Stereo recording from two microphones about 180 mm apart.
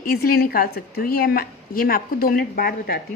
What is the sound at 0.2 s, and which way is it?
A woman's voice, 55° left (ahead or behind).